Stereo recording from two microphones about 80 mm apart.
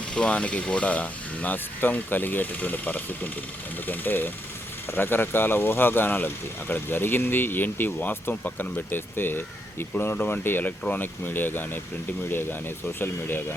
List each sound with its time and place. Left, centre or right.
0.1 s speech: centre